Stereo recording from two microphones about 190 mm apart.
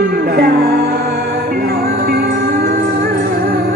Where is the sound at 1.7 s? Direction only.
55° right (ahead or behind).